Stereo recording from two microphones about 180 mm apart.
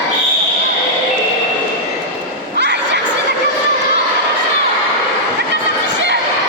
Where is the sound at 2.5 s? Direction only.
70° right (ahead or behind).